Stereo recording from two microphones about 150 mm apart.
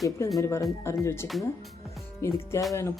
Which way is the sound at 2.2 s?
20° left (ahead or behind).